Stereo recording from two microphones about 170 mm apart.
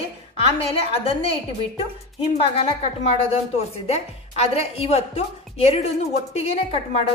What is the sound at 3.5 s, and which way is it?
A woman's voice, 40° left (ahead or behind).